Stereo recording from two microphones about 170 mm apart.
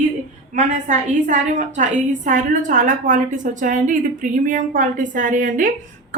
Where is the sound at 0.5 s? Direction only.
45° right (ahead or behind).